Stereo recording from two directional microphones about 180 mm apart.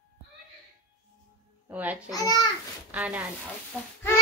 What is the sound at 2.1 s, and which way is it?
Speech, 20° left (ahead or behind).